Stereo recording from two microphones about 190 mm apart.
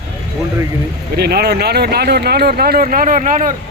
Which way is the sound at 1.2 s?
55° right (ahead or behind).